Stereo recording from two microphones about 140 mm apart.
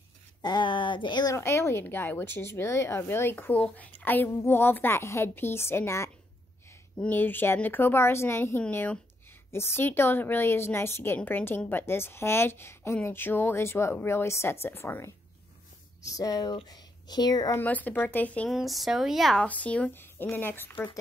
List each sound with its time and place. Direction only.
0.4 s speech: 30° left (ahead or behind)
1.3 s a woman's voice: 20° left (ahead or behind)
17.6 s a woman's voice: 10° left (ahead or behind)
18.5 s a woman's voice: centre (ahead or behind); by 21.0 s 15° left (ahead or behind)